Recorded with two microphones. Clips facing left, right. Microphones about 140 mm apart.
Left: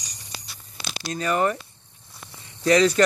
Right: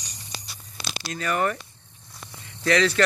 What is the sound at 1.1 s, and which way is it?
Speech, 25° left (ahead or behind).